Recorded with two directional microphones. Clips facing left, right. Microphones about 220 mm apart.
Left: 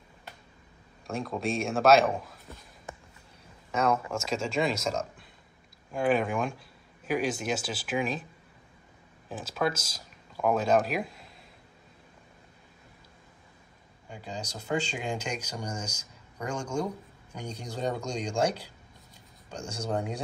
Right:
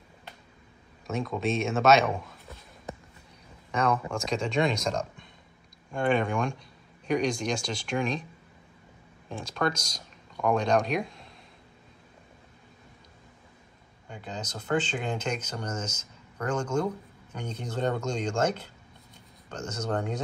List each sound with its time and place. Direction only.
1.0 s speech: centre (ahead or behind)
3.7 s speech: 5° left (ahead or behind)
9.3 s speech: 5° left (ahead or behind)
14.0 s speech: 10° left (ahead or behind)
19.5 s speech: 10° left (ahead or behind)